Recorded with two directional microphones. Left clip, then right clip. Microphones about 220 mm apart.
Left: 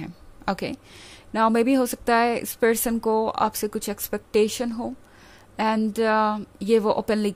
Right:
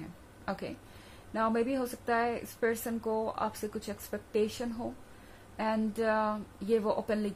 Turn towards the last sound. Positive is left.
turn(degrees=45)  # may be behind; listen again after turning